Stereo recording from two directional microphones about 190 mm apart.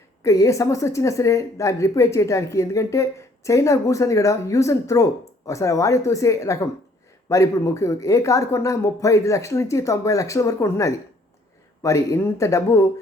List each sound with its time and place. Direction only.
0.2 s a woman's voice: 15° left (ahead or behind)